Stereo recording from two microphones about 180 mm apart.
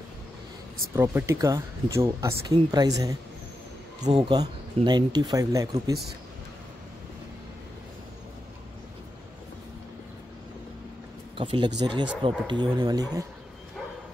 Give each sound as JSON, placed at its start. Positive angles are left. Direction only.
{"t": 0.9, "sound": "speech", "side_deg": -15}
{"t": 11.3, "sound": "speech", "side_deg": -25}